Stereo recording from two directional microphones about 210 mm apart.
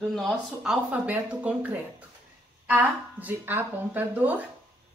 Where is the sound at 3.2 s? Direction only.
10° right (ahead or behind).